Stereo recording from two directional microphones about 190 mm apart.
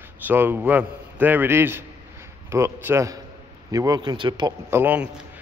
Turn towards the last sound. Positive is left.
turn(degrees=-10)  # may be behind; listen again after turning